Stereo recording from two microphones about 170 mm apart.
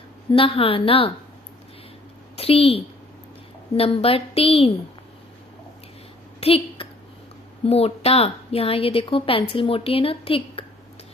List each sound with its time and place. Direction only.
0.3 s a woman's voice: 35° left (ahead or behind)
2.3 s a woman's voice: 35° left (ahead or behind)
6.4 s a sound: 35° left (ahead or behind)
7.6 s a woman's voice: 35° left (ahead or behind)